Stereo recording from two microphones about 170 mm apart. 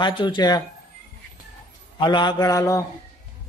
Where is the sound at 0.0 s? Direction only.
25° left (ahead or behind).